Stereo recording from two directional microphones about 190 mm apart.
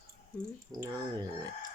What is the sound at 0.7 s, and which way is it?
Speech, 20° right (ahead or behind).